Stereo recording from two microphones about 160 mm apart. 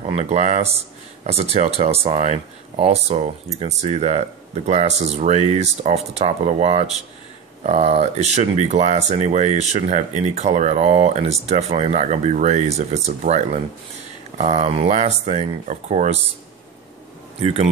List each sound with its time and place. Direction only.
0.1 s speech: 45° right (ahead or behind)
17.4 s speech: 40° right (ahead or behind)